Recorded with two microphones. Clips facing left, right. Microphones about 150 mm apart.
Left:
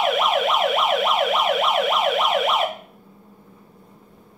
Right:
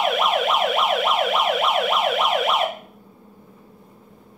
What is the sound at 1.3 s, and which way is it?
Emergency vehicle, centre (ahead or behind).